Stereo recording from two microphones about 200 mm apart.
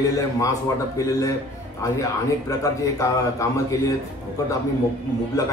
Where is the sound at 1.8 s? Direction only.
15° left (ahead or behind).